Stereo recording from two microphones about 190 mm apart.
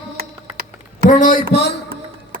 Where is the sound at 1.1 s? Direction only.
45° left (ahead or behind).